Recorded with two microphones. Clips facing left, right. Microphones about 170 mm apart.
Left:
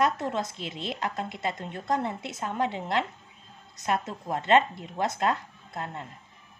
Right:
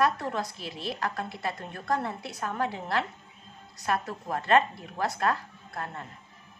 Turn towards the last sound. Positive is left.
turn(degrees=20)  # may be behind; listen again after turning